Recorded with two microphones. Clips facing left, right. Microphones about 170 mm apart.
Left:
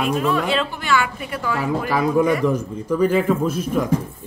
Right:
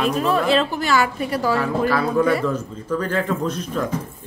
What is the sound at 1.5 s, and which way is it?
A man's voice, 15° left (ahead or behind).